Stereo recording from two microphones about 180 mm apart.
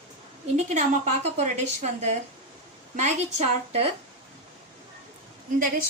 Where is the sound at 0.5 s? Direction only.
40° right (ahead or behind).